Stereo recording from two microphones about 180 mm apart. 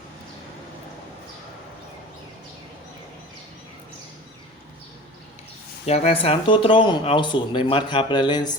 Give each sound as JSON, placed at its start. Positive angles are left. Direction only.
{"t": 5.8, "sound": "speech", "side_deg": 35}